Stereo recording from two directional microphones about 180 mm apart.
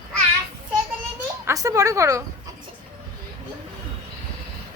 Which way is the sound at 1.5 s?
20° right (ahead or behind).